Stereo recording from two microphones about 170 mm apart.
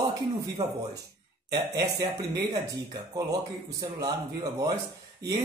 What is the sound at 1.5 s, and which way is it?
Speech, 25° right (ahead or behind).